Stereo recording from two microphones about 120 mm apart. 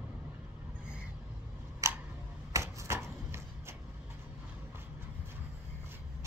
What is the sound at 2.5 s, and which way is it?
Typewriter, 25° right (ahead or behind).